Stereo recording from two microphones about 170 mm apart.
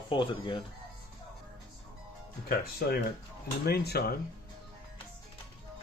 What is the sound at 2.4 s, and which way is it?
Speech, 65° left (ahead or behind).